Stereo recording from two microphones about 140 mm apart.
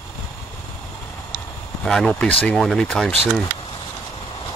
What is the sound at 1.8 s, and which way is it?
Speech, 5° left (ahead or behind).